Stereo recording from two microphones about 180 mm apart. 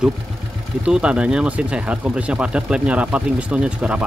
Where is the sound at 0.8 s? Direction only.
5° right (ahead or behind).